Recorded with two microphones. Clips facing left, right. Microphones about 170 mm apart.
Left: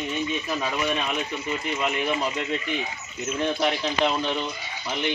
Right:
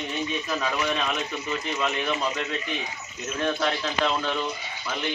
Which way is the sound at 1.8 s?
20° left (ahead or behind).